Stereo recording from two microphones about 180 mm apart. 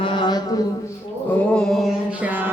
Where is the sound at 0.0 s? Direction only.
25° left (ahead or behind).